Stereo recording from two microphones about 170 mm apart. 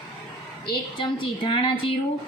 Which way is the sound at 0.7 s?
30° left (ahead or behind).